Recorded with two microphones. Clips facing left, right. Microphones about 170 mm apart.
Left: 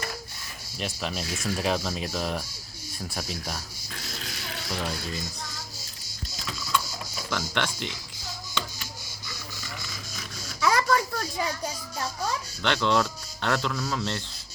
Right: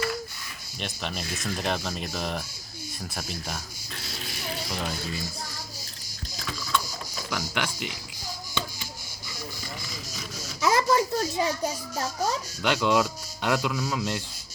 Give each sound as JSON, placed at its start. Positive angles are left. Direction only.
{"t": 0.8, "sound": "speech", "side_deg": 0}
{"t": 4.7, "sound": "speech", "side_deg": 0}
{"t": 6.4, "sound": "a sound", "side_deg": 5}
{"t": 7.3, "sound": "speech", "side_deg": -5}
{"t": 10.6, "sound": "a sound", "side_deg": -25}
{"t": 12.6, "sound": "speech", "side_deg": -10}